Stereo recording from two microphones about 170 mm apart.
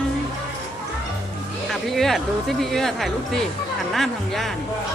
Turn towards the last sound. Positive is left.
turn(degrees=0)  # may be behind; listen again after turning